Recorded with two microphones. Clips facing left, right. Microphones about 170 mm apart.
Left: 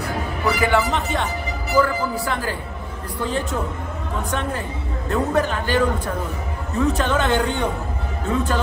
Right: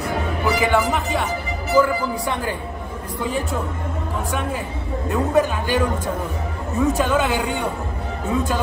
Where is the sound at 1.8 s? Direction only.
20° right (ahead or behind).